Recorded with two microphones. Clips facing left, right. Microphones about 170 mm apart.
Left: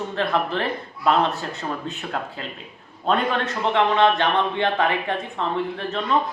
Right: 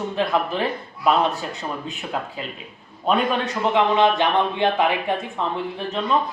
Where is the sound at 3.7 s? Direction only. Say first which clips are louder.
Even; 10° right (ahead or behind).